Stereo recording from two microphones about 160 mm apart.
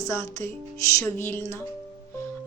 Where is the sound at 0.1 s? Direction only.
20° left (ahead or behind).